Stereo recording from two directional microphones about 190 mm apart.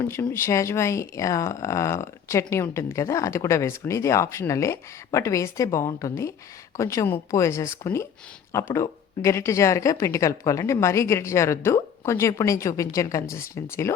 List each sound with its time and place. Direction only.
0.0 s speech: 15° left (ahead or behind)